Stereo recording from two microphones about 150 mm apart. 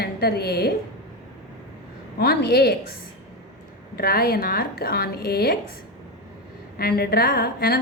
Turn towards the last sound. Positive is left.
turn(degrees=90)